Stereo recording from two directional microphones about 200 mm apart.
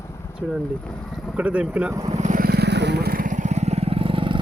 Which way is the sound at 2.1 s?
40° right (ahead or behind).